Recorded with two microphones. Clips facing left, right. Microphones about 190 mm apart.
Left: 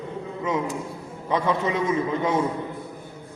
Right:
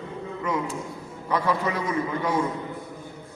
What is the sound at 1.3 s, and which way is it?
Speech, 20° left (ahead or behind).